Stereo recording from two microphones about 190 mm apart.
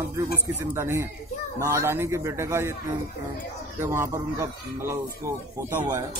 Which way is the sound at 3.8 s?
15° right (ahead or behind).